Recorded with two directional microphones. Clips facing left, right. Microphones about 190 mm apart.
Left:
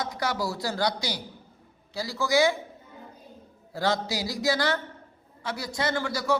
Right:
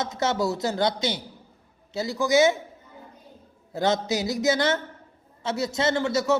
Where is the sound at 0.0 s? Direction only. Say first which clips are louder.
Right 4 dB; 25° right (ahead or behind).